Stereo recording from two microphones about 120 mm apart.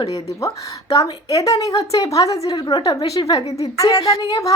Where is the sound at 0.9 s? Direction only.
30° left (ahead or behind).